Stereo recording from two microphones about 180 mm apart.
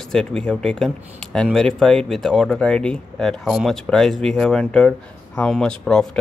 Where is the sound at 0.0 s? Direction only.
5° left (ahead or behind).